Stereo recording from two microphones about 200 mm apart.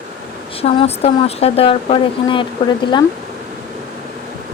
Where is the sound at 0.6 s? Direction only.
30° left (ahead or behind).